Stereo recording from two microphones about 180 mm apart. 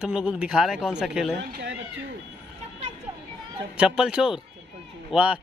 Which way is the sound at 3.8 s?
5° right (ahead or behind).